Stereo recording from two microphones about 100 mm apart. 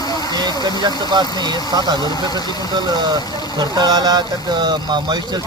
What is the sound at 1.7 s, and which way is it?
Speech, 45° right (ahead or behind).